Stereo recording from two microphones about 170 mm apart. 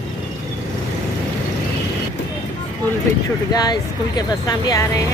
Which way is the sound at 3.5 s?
25° left (ahead or behind).